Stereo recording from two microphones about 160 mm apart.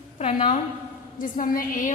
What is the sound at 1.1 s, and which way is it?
Speech, 55° left (ahead or behind).